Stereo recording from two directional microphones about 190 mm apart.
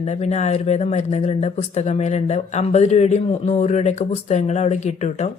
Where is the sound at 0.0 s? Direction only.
35° left (ahead or behind).